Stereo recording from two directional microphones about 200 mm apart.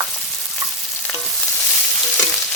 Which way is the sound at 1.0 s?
10° left (ahead or behind).